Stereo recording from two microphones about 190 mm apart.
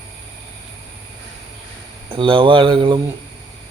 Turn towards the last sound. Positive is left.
turn(degrees=-25)  # may be behind; listen again after turning